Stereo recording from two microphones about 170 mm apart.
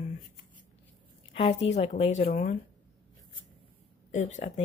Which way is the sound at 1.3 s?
35° left (ahead or behind).